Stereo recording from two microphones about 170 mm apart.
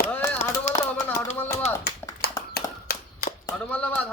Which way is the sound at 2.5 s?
70° left (ahead or behind).